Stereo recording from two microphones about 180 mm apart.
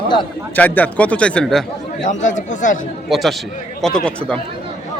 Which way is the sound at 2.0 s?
45° left (ahead or behind).